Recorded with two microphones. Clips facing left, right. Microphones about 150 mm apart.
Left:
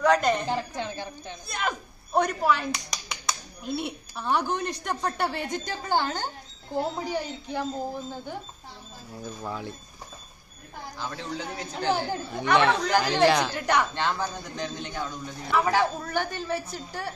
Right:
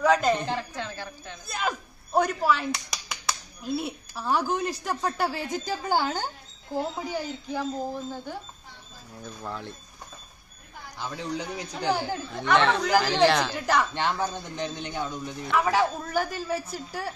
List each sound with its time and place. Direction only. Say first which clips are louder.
0.0 s a woman's voice: even; 5° right (ahead or behind)
0.5 s a sound: left 2 dB; 15° left (ahead or behind)
1.5 s speech: right 1 dB; centre (ahead or behind)
11.0 s a woman's voice: right 2 dB; 15° right (ahead or behind)
12.3 s speech: even; 5° left (ahead or behind)
13.9 s a man's voice: right 1 dB; 20° right (ahead or behind)
15.0 s a woman's voice: right 1 dB; centre (ahead or behind)